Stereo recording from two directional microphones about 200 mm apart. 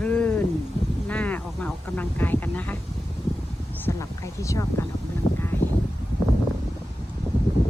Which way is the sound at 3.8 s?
15° left (ahead or behind).